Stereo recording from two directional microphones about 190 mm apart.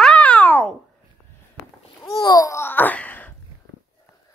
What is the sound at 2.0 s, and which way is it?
Babbling, 20° left (ahead or behind).